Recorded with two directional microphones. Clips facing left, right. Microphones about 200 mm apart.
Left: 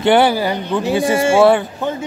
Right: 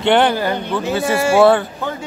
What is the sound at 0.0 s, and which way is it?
Speech, 10° left (ahead or behind).